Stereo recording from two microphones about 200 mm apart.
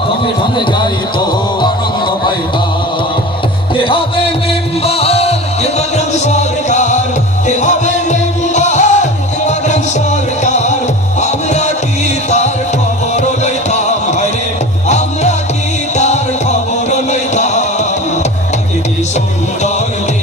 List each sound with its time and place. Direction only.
1.6 s music: 20° left (ahead or behind)
3.8 s music: 25° left (ahead or behind)